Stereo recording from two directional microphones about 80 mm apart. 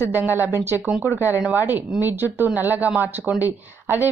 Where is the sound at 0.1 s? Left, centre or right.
Right.